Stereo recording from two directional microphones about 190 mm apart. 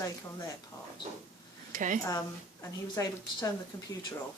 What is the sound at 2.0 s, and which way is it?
A woman's voice, 20° left (ahead or behind).